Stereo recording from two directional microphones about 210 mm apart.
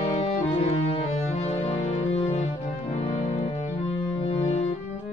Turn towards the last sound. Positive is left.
turn(degrees=30)  # may be behind; listen again after turning